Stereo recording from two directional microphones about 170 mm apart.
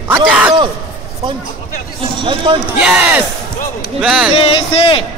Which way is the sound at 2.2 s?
30° right (ahead or behind).